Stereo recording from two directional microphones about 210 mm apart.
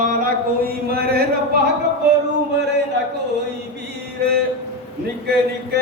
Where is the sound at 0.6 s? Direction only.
45° right (ahead or behind).